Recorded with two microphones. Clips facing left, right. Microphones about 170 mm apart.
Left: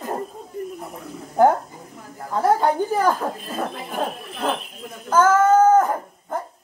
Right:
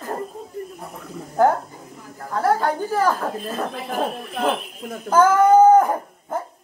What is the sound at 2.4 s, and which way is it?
Speech, 20° left (ahead or behind).